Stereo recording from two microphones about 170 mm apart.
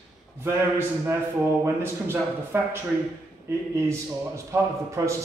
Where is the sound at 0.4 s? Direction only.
15° right (ahead or behind).